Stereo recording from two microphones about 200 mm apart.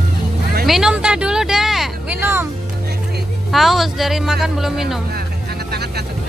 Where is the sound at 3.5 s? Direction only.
Centre (ahead or behind).